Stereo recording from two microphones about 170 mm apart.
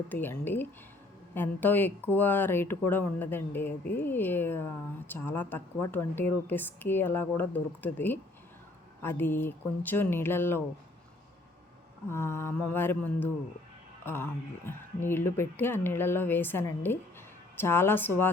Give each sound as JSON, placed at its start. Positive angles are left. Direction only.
{"t": 0.1, "sound": "speech", "side_deg": 10}
{"t": 12.0, "sound": "speech", "side_deg": 15}
{"t": 14.0, "sound": "music", "side_deg": 15}
{"t": 14.7, "sound": "speech", "side_deg": 15}